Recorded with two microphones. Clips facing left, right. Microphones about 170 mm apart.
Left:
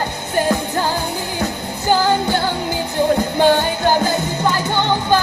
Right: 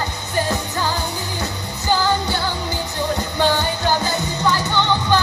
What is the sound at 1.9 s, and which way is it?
Music, 50° left (ahead or behind).